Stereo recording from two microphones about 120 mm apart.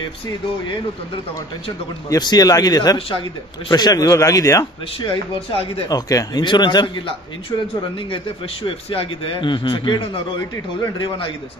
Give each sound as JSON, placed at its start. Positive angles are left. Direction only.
{"t": 2.0, "sound": "a man's voice", "side_deg": 35}
{"t": 5.0, "sound": "a man's voice", "side_deg": 50}
{"t": 5.9, "sound": "speech", "side_deg": 30}
{"t": 8.6, "sound": "a man's voice", "side_deg": 50}